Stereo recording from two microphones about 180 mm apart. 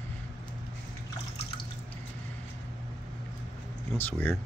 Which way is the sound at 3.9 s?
10° left (ahead or behind).